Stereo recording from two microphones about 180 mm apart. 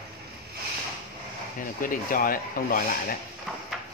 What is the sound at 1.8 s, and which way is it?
Speech, 50° left (ahead or behind).